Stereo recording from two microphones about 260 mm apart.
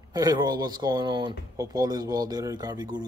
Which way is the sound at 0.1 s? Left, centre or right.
Centre.